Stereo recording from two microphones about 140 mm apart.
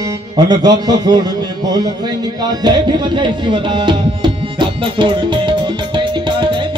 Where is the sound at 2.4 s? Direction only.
30° right (ahead or behind).